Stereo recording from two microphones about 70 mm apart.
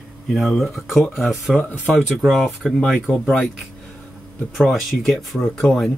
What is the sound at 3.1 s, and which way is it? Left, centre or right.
Speech, left.